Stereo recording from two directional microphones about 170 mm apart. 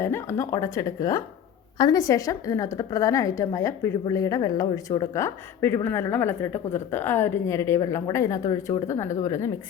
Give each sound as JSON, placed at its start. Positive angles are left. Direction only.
{"t": 0.0, "sound": "a woman's voice", "side_deg": 15}